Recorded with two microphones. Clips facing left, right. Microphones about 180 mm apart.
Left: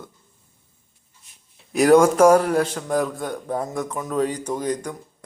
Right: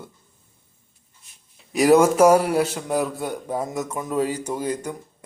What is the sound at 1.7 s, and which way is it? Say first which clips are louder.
A man's voice: left 1 dB; centre (ahead or behind).